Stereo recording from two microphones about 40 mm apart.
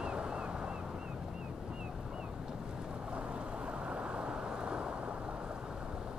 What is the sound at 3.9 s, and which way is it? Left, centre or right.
Vehicle, right.